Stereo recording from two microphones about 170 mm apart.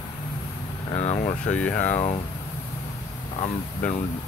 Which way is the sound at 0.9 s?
40° left (ahead or behind).